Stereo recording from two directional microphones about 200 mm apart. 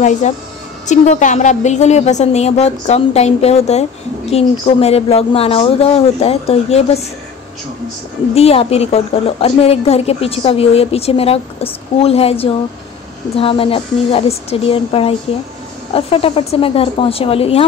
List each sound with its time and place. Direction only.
0.0 s a woman's voice: 35° left (ahead or behind)
8.4 s a woman's voice: 30° left (ahead or behind)